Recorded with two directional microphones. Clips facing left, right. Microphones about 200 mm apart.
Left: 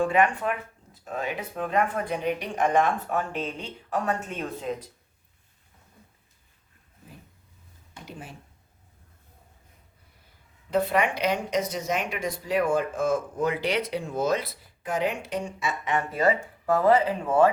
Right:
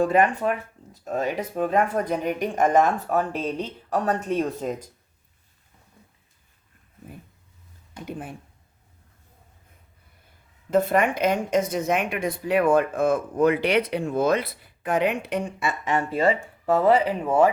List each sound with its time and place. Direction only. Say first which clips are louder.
0.0 s speech: right 3 dB; 40° right (ahead or behind)
8.0 s a woman's voice: right 8 dB; 55° right (ahead or behind)
10.7 s a woman's voice: right 3 dB; 45° right (ahead or behind)
15.9 s speech: right 2 dB; 30° right (ahead or behind)